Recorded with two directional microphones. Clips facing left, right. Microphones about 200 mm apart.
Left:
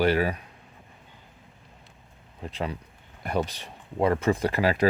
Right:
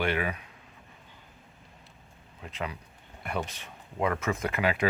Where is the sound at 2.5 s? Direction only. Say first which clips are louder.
Left 4 dB; 35° left (ahead or behind).